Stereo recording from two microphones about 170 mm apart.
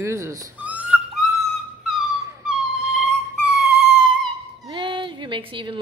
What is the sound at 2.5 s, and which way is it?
Dog, 5° right (ahead or behind).